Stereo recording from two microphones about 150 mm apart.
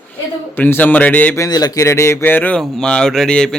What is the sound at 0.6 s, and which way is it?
Speech, 15° left (ahead or behind).